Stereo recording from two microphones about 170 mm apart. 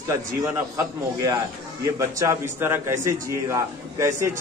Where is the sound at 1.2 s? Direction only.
20° right (ahead or behind).